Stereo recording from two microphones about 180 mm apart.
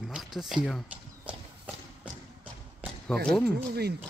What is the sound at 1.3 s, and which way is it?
Horse, 5° right (ahead or behind).